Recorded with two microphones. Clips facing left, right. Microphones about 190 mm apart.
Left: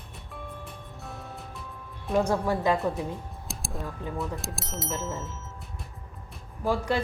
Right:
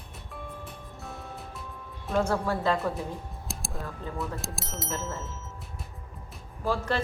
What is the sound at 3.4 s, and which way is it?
Speech, centre (ahead or behind).